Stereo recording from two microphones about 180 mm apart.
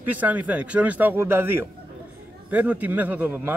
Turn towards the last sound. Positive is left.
turn(degrees=-10)  # may be behind; listen again after turning